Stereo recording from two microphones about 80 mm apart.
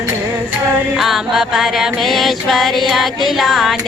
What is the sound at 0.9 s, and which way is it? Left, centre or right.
Music, centre.